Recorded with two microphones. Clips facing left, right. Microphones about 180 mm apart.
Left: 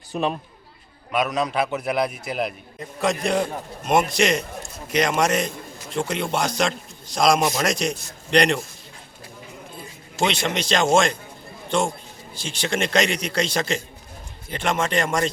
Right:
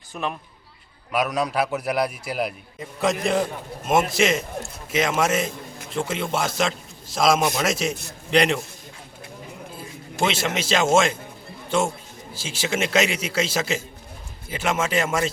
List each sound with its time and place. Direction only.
0.1 s speech: 20° left (ahead or behind)
1.1 s a man's voice: 5° right (ahead or behind)
9.7 s a man's voice: 5° right (ahead or behind)